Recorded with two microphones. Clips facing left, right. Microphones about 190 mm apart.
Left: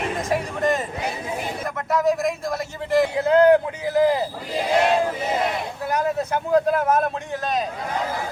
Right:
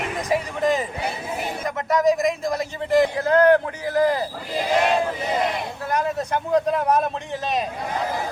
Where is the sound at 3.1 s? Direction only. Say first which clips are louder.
Left 2 dB; 25° left (ahead or behind).